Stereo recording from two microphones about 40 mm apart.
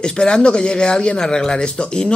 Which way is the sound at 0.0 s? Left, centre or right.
Centre.